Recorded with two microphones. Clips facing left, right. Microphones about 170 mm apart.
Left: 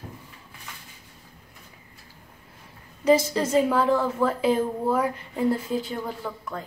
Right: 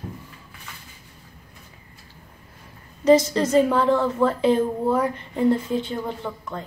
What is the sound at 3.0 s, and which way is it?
A woman's voice, 10° left (ahead or behind).